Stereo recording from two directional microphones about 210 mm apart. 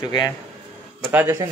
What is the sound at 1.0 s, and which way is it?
Speech, 10° right (ahead or behind).